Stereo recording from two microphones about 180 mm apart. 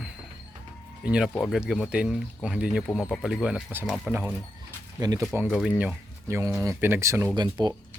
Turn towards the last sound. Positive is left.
turn(degrees=-25)  # may be behind; listen again after turning